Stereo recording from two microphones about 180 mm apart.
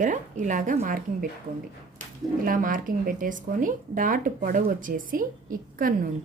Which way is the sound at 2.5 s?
50° right (ahead or behind).